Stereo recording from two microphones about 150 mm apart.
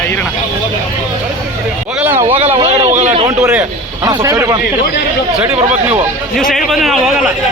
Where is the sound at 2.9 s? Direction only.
45° right (ahead or behind).